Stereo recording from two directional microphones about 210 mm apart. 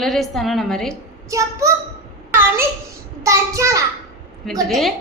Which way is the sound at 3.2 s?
15° right (ahead or behind).